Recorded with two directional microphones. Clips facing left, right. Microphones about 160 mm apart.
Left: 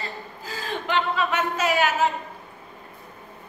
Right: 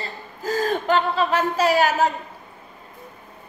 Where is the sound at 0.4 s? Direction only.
45° right (ahead or behind).